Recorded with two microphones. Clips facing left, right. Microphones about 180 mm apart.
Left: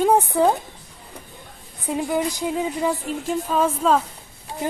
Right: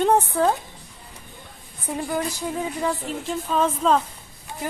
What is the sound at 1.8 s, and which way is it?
A woman's voice, 15° left (ahead or behind).